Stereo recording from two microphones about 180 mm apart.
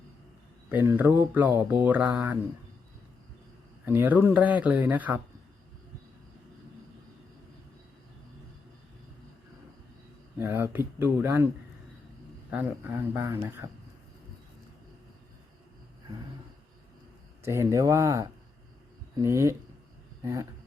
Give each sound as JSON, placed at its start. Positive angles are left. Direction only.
{"t": 0.7, "sound": "speech", "side_deg": -10}
{"t": 3.8, "sound": "speech", "side_deg": -10}
{"t": 10.3, "sound": "speech", "side_deg": -10}
{"t": 12.5, "sound": "speech", "side_deg": -10}
{"t": 17.4, "sound": "speech", "side_deg": -15}